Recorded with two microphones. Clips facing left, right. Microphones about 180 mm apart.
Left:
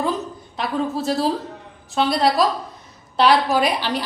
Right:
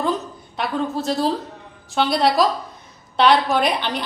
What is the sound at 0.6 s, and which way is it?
A woman's voice, centre (ahead or behind).